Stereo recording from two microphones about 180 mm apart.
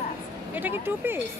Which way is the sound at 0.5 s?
10° right (ahead or behind).